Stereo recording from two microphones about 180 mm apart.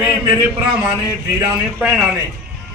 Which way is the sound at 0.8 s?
20° right (ahead or behind).